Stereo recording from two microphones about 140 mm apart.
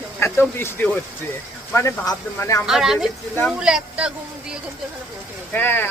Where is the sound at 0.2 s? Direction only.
15° left (ahead or behind).